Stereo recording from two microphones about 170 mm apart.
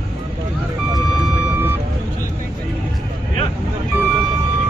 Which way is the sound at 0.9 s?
10° right (ahead or behind).